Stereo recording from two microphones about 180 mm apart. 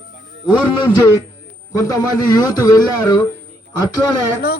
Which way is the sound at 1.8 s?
20° left (ahead or behind).